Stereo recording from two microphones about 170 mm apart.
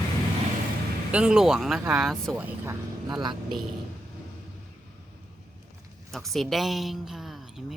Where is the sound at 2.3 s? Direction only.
10° right (ahead or behind).